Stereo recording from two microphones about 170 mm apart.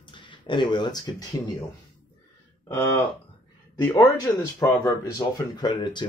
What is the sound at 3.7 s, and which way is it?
Speech, 20° left (ahead or behind).